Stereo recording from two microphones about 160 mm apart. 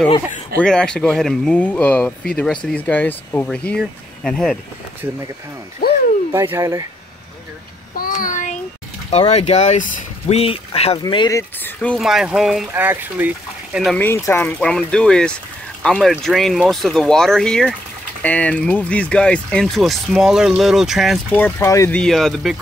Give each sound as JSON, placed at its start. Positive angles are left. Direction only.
{"t": 0.6, "sound": "speech", "side_deg": 5}
{"t": 6.3, "sound": "speech", "side_deg": -15}
{"t": 8.0, "sound": "child singing", "side_deg": 55}
{"t": 9.1, "sound": "speech", "side_deg": 40}
{"t": 11.3, "sound": "speech", "side_deg": 10}
{"t": 12.0, "sound": "speech", "side_deg": -5}
{"t": 13.9, "sound": "speech", "side_deg": 15}
{"t": 21.4, "sound": "speech", "side_deg": 10}
{"t": 21.9, "sound": "speech", "side_deg": 5}